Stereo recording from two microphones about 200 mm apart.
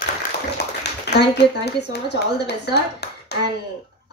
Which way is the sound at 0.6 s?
55° left (ahead or behind).